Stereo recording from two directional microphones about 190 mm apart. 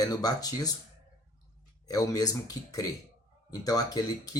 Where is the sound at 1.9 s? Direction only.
20° left (ahead or behind).